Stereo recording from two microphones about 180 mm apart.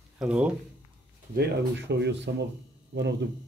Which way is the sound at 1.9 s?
70° right (ahead or behind).